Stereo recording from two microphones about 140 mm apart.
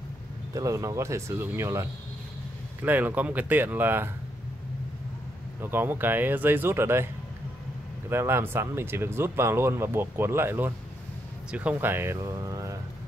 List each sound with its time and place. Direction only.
0.6 s speech: 20° right (ahead or behind)
5.6 s speech: 15° right (ahead or behind)
8.1 s speech: 15° right (ahead or behind)